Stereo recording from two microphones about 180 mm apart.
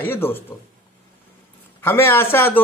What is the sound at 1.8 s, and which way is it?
Speech, 15° left (ahead or behind).